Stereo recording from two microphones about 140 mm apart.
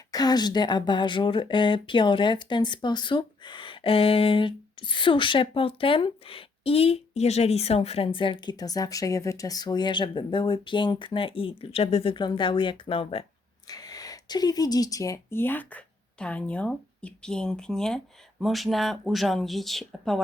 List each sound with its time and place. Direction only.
0.1 s speech: 30° left (ahead or behind)
13.7 s speech: 25° left (ahead or behind); by 20.2 s centre (ahead or behind)